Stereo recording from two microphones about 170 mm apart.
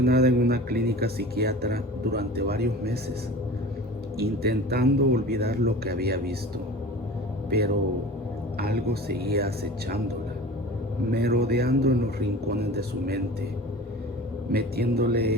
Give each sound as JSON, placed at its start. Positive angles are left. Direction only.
{"t": 0.0, "sound": "speech", "side_deg": -65}
{"t": 4.2, "sound": "speech", "side_deg": -65}
{"t": 8.5, "sound": "speech", "side_deg": -65}
{"t": 11.1, "sound": "speech", "side_deg": -70}
{"t": 14.5, "sound": "speech", "side_deg": -65}